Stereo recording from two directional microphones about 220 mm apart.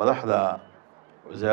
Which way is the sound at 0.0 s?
15° right (ahead or behind).